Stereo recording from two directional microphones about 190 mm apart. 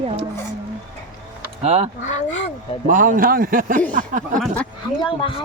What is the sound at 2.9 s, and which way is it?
Speech, 45° right (ahead or behind).